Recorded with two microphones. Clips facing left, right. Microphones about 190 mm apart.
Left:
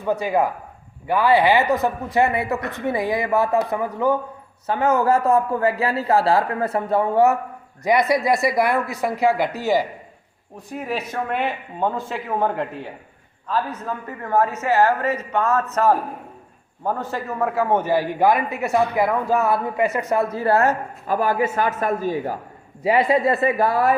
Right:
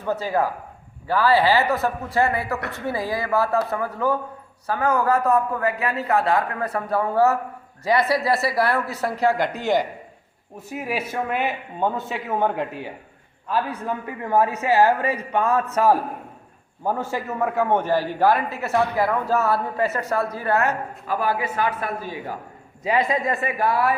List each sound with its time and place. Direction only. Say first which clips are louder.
0.0 s a man's voice: left 2 dB; 15° left (ahead or behind)
10.7 s speech: even; 5° right (ahead or behind)
13.5 s a man's voice: even; 15° right (ahead or behind); by 22.4 s 45° left (ahead or behind)
22.8 s a woman's voice: left 4 dB; 30° left (ahead or behind)